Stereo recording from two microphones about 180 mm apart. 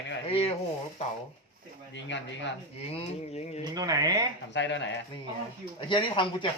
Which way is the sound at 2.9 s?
30° left (ahead or behind).